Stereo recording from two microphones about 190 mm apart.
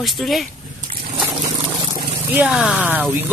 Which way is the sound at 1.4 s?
25° right (ahead or behind).